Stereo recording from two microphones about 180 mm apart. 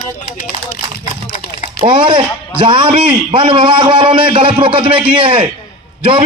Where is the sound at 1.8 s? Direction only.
30° right (ahead or behind).